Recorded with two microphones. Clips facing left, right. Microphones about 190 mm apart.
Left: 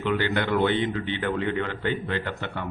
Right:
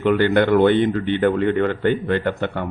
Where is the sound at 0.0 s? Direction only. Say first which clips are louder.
Right 9 dB; 55° right (ahead or behind).